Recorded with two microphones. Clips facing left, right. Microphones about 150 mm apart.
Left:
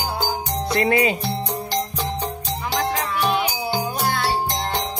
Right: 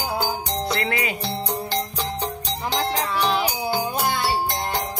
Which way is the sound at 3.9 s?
15° right (ahead or behind).